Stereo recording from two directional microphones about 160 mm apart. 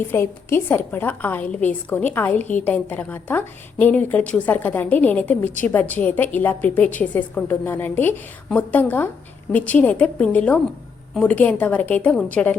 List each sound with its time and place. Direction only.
0.1 s a woman's voice: 15° left (ahead or behind)